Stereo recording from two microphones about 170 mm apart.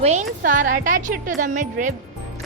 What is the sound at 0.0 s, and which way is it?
Speech, 40° right (ahead or behind).